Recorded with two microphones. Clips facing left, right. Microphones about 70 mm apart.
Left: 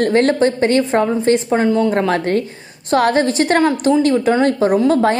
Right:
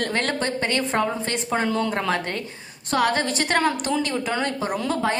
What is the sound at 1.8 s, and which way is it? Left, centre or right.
Speech, left.